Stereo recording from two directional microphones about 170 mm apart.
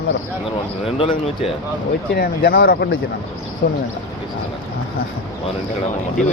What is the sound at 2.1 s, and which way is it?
Speech, 60° left (ahead or behind).